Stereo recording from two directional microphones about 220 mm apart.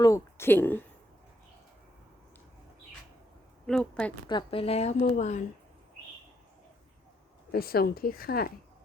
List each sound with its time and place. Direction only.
0.0 s a woman's voice: 15° left (ahead or behind)
3.7 s a woman's voice: 5° left (ahead or behind)
4.3 s a woman's voice: 20° left (ahead or behind)
7.5 s speech: 45° left (ahead or behind)